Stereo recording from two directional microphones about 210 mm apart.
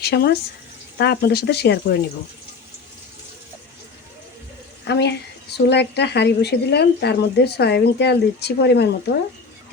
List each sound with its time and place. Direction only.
0.0 s a woman's voice: 50° left (ahead or behind)
4.9 s a woman's voice: 55° left (ahead or behind)